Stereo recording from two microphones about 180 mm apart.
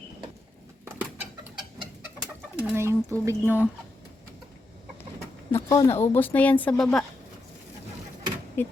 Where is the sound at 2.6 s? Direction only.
15° right (ahead or behind).